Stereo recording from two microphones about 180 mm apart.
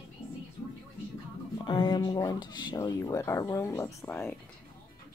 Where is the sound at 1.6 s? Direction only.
25° left (ahead or behind).